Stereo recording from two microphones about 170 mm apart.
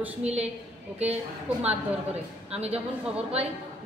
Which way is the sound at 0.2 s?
40° right (ahead or behind).